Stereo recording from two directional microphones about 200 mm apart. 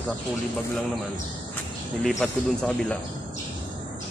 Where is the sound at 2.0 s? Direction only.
5° left (ahead or behind).